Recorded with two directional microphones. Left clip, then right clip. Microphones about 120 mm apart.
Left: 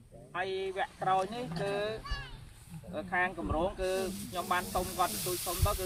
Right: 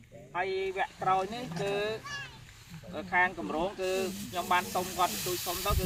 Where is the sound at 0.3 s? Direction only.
35° left (ahead or behind).